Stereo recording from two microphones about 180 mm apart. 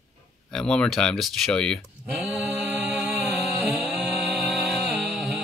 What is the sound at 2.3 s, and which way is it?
Mantra, 5° right (ahead or behind).